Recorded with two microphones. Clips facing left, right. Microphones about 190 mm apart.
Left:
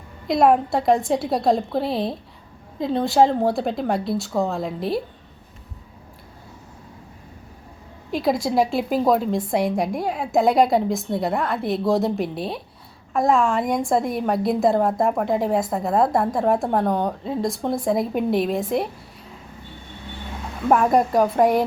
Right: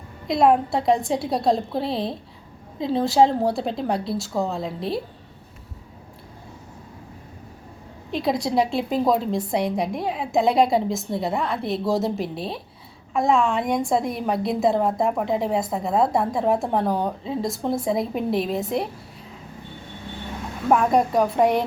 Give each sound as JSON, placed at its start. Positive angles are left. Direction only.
{"t": 0.3, "sound": "a woman's voice", "side_deg": 0}
{"t": 8.1, "sound": "a woman's voice", "side_deg": 0}
{"t": 20.7, "sound": "a woman's voice", "side_deg": 0}